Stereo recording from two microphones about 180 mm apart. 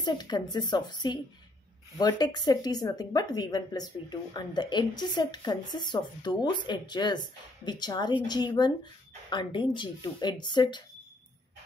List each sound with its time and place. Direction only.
0.0 s speech: 25° left (ahead or behind)